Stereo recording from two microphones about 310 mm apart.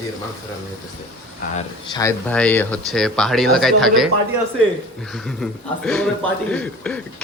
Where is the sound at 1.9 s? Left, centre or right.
Centre.